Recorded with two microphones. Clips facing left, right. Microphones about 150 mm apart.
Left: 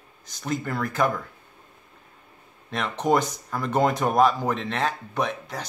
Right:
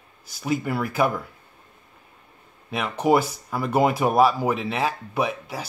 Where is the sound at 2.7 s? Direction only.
5° right (ahead or behind).